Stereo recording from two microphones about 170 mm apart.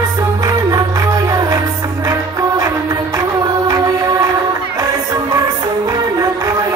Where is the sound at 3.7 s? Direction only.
20° right (ahead or behind).